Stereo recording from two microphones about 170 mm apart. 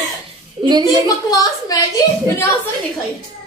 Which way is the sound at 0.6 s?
30° right (ahead or behind).